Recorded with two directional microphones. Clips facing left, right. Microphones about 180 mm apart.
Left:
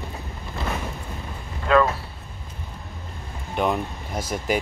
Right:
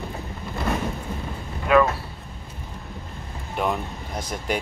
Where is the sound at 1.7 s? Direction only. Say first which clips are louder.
Right 1 dB; 15° right (ahead or behind).